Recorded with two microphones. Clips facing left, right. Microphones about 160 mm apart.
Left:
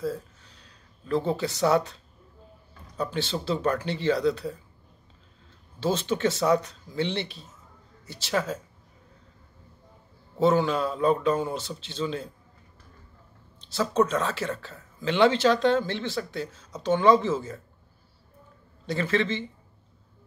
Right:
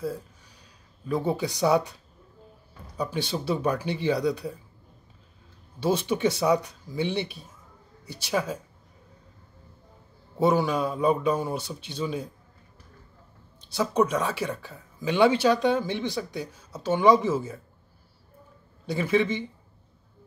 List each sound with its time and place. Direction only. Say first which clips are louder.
0.0 s a sound: left 1 dB; 10° right (ahead or behind)
3.0 s speech: even; 10° right (ahead or behind)
5.8 s speech: right 1 dB; 10° right (ahead or behind)
10.3 s speech: left 1 dB; 10° right (ahead or behind)
13.6 s speech: even; 10° right (ahead or behind)
18.9 s speech: right 2 dB; 10° right (ahead or behind)